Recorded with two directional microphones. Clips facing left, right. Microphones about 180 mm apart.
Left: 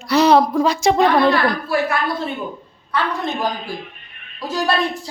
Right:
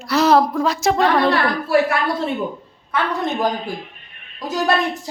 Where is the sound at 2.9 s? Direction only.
20° right (ahead or behind).